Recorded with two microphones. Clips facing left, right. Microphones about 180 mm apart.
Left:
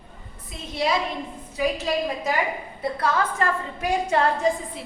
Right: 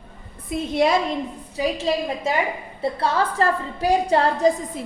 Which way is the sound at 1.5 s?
25° right (ahead or behind).